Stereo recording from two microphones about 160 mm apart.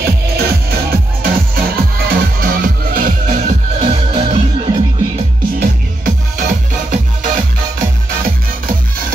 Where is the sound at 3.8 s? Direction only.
35° right (ahead or behind).